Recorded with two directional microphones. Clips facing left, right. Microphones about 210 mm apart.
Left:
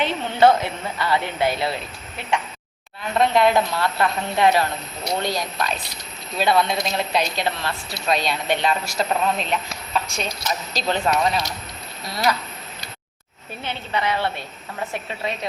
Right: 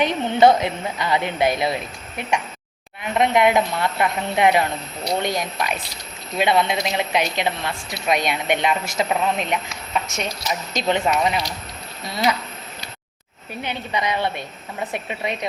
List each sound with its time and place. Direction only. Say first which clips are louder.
0.0 s a woman's voice: right 2 dB; 15° right (ahead or behind)
10.8 s speech: right 2 dB; 20° right (ahead or behind)
13.6 s a woman's voice: right 1 dB; 15° right (ahead or behind)